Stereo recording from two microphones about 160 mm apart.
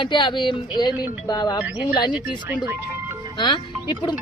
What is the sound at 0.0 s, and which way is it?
Speech, 30° left (ahead or behind).